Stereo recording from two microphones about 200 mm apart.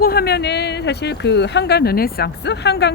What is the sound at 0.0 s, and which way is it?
Speech, 50° left (ahead or behind).